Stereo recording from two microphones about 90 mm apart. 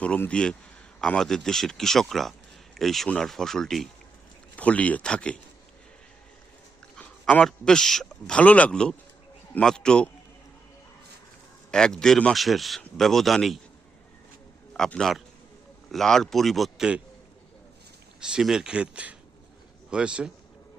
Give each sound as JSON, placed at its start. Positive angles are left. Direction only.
{"t": 0.0, "sound": "speech", "side_deg": 15}
{"t": 4.5, "sound": "speech", "side_deg": 15}
{"t": 7.0, "sound": "a sound", "side_deg": 20}
{"t": 7.4, "sound": "speech", "side_deg": 5}
{"t": 8.4, "sound": "speech", "side_deg": 15}
{"t": 11.7, "sound": "speech", "side_deg": 10}
{"t": 14.7, "sound": "a man's voice", "side_deg": 5}
{"t": 18.2, "sound": "speech", "side_deg": -10}